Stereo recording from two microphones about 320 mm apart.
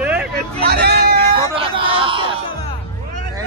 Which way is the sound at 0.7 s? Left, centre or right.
Right.